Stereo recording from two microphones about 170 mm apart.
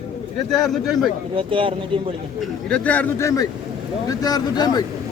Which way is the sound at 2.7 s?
10° left (ahead or behind).